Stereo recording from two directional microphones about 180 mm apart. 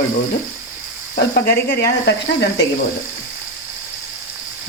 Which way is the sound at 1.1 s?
60° left (ahead or behind).